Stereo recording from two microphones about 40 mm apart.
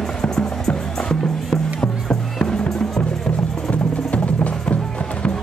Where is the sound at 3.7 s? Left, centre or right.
Left.